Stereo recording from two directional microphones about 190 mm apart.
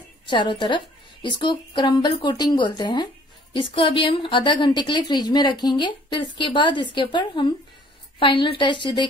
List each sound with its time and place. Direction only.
0.3 s a woman's voice: 25° left (ahead or behind)